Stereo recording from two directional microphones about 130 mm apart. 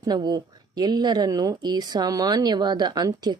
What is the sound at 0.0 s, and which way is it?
Speech, 30° right (ahead or behind).